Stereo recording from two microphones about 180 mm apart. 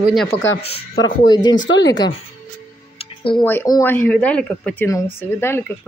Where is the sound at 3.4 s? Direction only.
15° left (ahead or behind).